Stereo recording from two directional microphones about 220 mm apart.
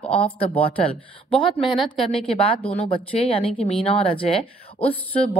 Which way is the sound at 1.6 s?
Centre (ahead or behind).